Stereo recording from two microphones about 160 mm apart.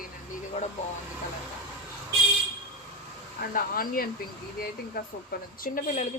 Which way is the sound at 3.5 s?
65° left (ahead or behind).